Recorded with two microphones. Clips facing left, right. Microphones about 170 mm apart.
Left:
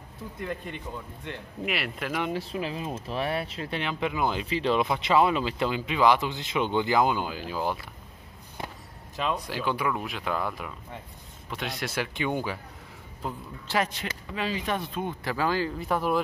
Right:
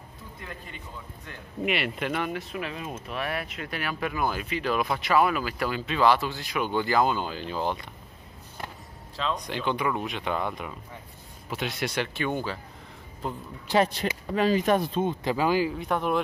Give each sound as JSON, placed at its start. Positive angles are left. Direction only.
{"t": 1.7, "sound": "speech", "side_deg": 0}
{"t": 2.3, "sound": "speech", "side_deg": 30}
{"t": 9.1, "sound": "speech", "side_deg": 10}
{"t": 12.1, "sound": "speech", "side_deg": 15}
{"t": 13.2, "sound": "speech", "side_deg": 5}
{"t": 13.7, "sound": "speech", "side_deg": -35}
{"t": 14.9, "sound": "speech", "side_deg": -20}
{"t": 15.7, "sound": "speech", "side_deg": 0}